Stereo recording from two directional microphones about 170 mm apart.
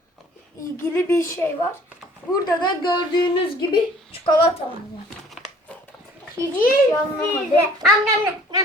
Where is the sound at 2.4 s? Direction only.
25° left (ahead or behind).